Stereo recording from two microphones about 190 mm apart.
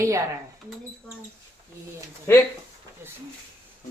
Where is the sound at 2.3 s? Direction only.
15° left (ahead or behind).